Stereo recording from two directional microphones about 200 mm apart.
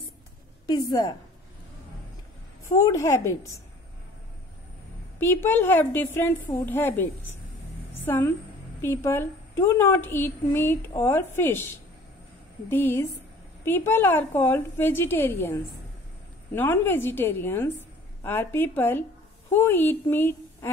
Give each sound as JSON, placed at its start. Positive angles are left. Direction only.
{"t": 0.7, "sound": "a woman's voice", "side_deg": 20}
{"t": 2.8, "sound": "a woman's voice", "side_deg": 15}
{"t": 5.2, "sound": "a woman's voice", "side_deg": 10}